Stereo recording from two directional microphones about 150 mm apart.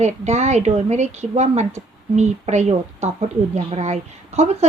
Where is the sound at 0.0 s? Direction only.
50° right (ahead or behind).